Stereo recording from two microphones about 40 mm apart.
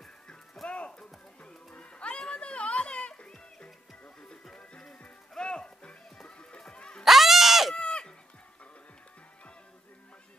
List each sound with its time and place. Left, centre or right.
0.7 s music: left
5.4 s music: left
7.1 s goat: centre
7.7 s goat: left